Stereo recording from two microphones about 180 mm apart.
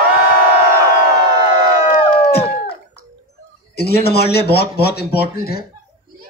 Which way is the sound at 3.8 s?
60° left (ahead or behind).